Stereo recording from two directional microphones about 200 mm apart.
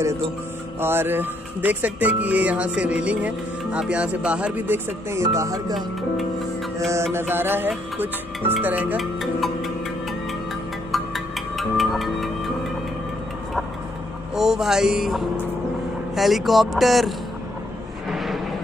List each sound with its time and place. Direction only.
0.7 s speech: 10° right (ahead or behind)
6.9 s music: 15° right (ahead or behind)
10.9 s music: centre (ahead or behind)
14.3 s speech: centre (ahead or behind)
18.0 s vehicle: centre (ahead or behind)